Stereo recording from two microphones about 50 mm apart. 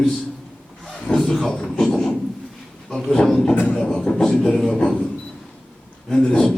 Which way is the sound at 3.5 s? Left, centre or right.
Left.